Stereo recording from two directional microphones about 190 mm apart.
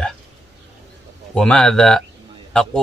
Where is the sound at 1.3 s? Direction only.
5° left (ahead or behind).